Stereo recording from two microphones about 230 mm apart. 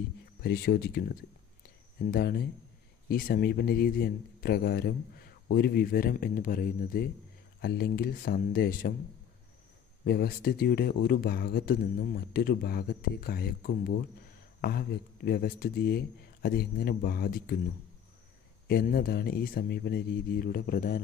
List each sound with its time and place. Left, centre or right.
0.4 s speech: left
10.0 s speech: left
18.7 s speech: left